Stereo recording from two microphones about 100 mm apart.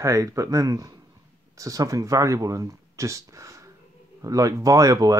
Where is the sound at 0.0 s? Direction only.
30° right (ahead or behind).